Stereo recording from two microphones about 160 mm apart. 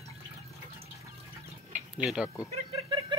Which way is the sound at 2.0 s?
5° right (ahead or behind).